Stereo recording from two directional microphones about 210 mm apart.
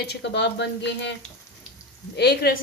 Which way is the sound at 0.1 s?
55° left (ahead or behind).